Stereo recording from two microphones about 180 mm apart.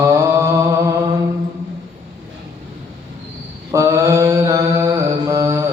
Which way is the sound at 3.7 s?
15° right (ahead or behind).